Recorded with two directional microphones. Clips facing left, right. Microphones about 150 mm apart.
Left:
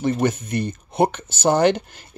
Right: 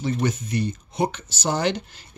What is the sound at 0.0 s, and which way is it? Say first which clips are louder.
Speech: left 4 dB; 55° left (ahead or behind).